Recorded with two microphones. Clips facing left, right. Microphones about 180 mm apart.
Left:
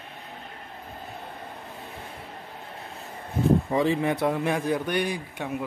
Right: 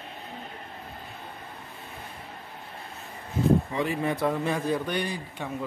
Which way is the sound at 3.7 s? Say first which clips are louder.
Left 5 dB; 30° left (ahead or behind).